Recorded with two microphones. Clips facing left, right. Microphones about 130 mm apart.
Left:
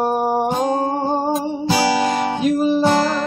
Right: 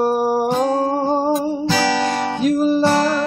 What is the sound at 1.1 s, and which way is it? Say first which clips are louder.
Music: right 2 dB; centre (ahead or behind).